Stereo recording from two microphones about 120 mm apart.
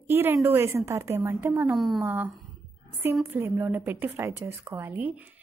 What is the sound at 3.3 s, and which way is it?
A woman's voice, 15° right (ahead or behind).